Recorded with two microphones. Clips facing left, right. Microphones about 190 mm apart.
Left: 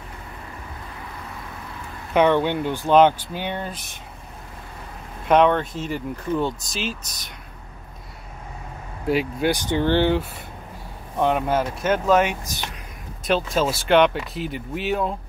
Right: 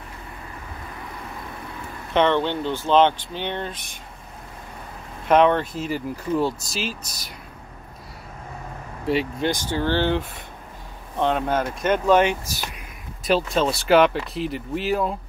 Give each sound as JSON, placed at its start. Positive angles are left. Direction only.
{"t": 2.1, "sound": "speech", "side_deg": 10}
{"t": 5.3, "sound": "speech", "side_deg": 0}
{"t": 9.0, "sound": "speech", "side_deg": 0}
{"t": 9.5, "sound": "speech", "side_deg": 20}